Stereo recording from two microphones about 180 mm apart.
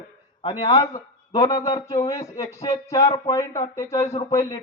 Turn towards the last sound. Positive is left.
turn(degrees=20)  # may be behind; listen again after turning